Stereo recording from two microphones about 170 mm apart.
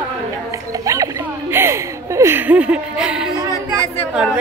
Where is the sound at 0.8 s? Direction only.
20° right (ahead or behind).